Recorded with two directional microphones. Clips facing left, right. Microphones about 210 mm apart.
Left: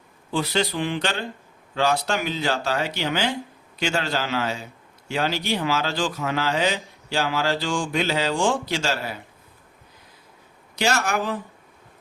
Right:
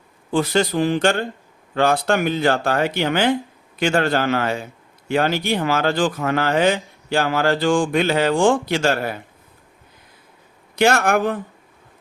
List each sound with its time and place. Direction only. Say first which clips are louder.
0.3 s a man's voice: right 5 dB; 50° right (ahead or behind)
10.8 s speech: right 7 dB; 55° right (ahead or behind)